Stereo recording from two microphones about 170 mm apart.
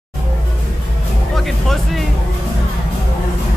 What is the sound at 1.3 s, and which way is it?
Music, centre (ahead or behind).